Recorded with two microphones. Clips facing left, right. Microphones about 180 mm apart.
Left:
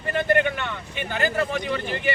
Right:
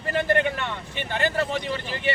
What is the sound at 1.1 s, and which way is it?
Speech, 30° right (ahead or behind).